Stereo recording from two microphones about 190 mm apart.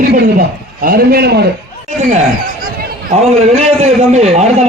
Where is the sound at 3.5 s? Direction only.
35° right (ahead or behind).